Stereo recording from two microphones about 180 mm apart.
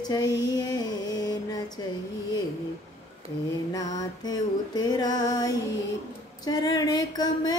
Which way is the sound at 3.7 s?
20° left (ahead or behind).